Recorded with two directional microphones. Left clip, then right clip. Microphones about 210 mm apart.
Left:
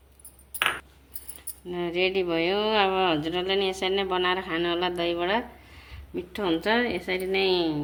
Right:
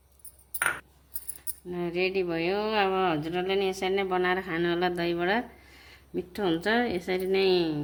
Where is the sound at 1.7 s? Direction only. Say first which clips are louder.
Left 3 dB; 20° right (ahead or behind).